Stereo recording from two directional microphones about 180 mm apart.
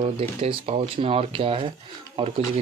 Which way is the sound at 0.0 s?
35° right (ahead or behind).